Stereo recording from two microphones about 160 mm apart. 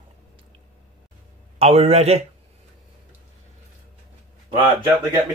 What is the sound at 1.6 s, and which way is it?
Speech, 35° right (ahead or behind).